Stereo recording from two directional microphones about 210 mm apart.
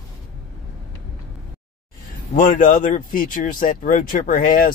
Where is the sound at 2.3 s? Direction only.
40° left (ahead or behind).